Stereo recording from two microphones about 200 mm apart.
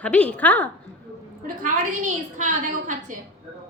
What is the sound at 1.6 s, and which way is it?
A woman's voice, 40° right (ahead or behind).